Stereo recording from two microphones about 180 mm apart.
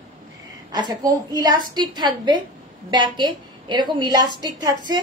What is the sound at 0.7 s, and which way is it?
A woman's voice, 20° right (ahead or behind).